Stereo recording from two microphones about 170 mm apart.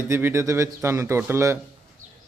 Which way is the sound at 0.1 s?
15° right (ahead or behind).